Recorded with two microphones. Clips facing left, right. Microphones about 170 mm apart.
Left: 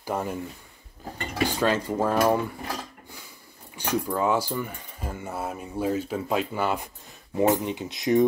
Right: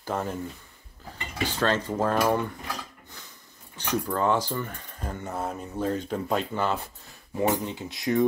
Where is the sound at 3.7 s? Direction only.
10° left (ahead or behind).